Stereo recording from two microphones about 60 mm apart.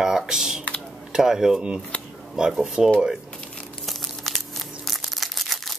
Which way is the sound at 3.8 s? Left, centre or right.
Centre.